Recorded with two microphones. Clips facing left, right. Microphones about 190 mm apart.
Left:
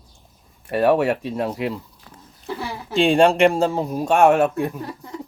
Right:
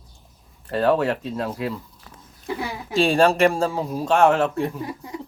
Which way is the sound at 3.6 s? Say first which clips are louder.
Left 3 dB; 20° left (ahead or behind).